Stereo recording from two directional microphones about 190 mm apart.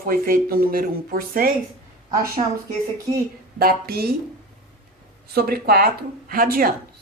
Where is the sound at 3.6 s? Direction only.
55° right (ahead or behind).